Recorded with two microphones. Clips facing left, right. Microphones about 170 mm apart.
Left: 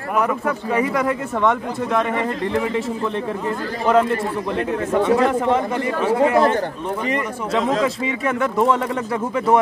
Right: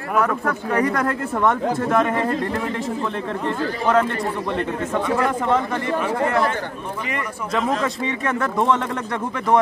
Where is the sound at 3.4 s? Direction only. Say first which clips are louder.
Right 1 dB; 10° left (ahead or behind).